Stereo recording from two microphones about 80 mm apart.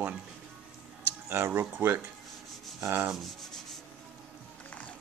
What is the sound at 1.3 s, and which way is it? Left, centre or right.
Speech, right.